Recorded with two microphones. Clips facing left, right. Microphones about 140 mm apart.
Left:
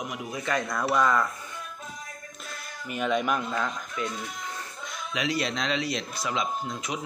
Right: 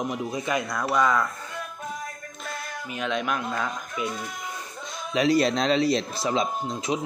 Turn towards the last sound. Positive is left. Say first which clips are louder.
# right 4 dB
turn(degrees=-25)  # may be behind; listen again after turning